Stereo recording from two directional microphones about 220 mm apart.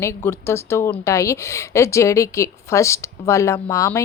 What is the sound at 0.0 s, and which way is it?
A woman's voice, 10° left (ahead or behind).